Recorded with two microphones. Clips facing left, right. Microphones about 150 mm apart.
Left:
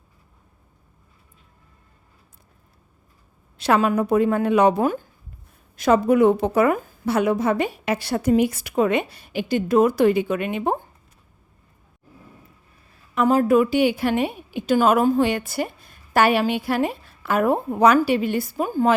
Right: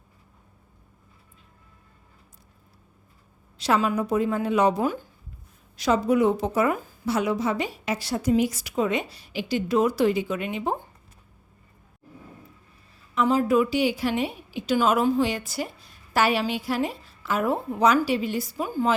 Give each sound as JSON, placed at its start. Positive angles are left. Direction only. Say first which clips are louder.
{"t": 3.6, "sound": "a woman's voice", "louder": "left 4 dB", "side_deg": 55}
{"t": 13.1, "sound": "a woman's voice", "louder": "left 4 dB", "side_deg": 55}